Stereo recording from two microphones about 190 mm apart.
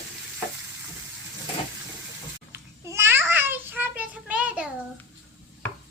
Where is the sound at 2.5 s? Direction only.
15° right (ahead or behind).